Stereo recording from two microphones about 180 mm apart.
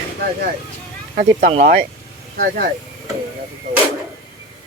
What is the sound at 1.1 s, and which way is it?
Speech, 45° right (ahead or behind).